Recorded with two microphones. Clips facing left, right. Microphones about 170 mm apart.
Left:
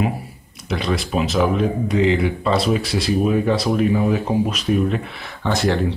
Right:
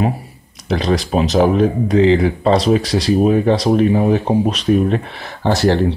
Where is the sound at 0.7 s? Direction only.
35° right (ahead or behind).